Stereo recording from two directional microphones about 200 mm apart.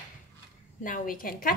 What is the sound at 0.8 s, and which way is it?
Speech, 45° left (ahead or behind).